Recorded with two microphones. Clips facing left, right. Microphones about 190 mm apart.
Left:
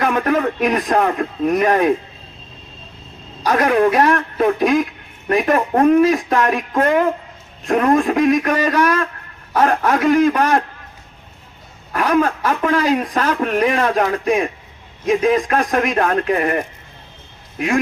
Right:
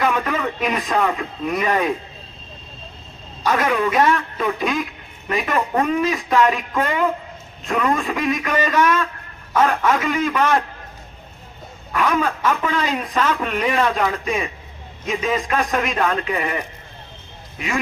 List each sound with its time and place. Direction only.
0.0 s a man's voice: 50° left (ahead or behind)
3.4 s speech: 50° left (ahead or behind)
11.9 s speech: 50° left (ahead or behind)